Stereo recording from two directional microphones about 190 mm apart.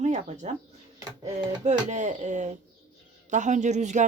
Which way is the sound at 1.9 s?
40° right (ahead or behind).